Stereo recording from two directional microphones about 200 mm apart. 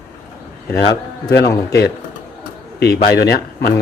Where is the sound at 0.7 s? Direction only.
55° left (ahead or behind).